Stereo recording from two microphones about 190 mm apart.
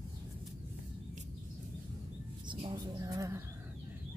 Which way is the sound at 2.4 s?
25° right (ahead or behind).